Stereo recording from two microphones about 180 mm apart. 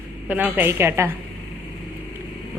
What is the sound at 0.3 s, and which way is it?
Speech, 10° right (ahead or behind).